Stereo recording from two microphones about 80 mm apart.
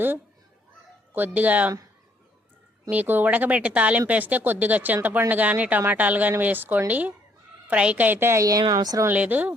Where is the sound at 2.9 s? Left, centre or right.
Right.